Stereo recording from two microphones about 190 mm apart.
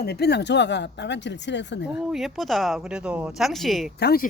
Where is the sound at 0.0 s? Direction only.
55° left (ahead or behind).